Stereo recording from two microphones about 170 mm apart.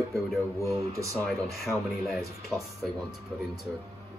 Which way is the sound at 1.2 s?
Centre (ahead or behind).